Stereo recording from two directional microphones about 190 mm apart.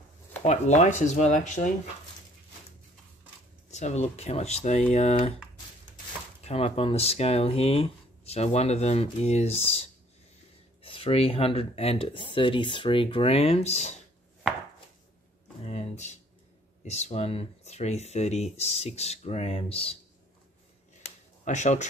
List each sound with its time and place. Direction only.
0.4 s speech: 35° left (ahead or behind)
3.7 s speech: 35° left (ahead or behind)
6.4 s speech: 30° left (ahead or behind)
15.6 s a sound: 35° left (ahead or behind)
16.8 s speech: 35° left (ahead or behind)
21.5 s speech: 40° left (ahead or behind)